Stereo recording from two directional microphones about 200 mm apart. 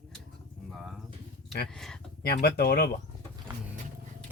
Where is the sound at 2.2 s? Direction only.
50° left (ahead or behind).